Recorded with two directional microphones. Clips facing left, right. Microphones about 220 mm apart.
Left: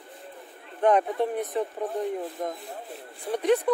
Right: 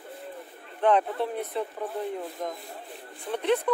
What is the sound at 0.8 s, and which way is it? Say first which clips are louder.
Speech: left 2 dB; 10° left (ahead or behind).